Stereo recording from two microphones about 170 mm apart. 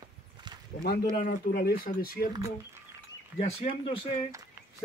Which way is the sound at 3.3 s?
40° left (ahead or behind).